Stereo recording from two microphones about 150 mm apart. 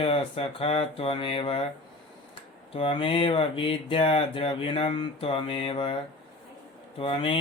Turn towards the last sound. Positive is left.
turn(degrees=35)  # may be behind; listen again after turning